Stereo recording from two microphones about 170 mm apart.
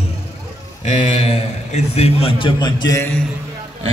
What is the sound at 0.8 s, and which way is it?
A man's voice, 45° left (ahead or behind).